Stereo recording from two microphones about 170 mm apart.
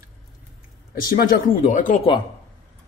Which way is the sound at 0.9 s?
60° left (ahead or behind).